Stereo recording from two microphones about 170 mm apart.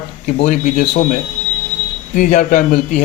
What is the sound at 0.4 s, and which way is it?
Speech, 45° left (ahead or behind).